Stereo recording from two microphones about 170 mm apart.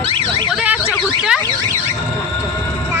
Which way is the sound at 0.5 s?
10° right (ahead or behind).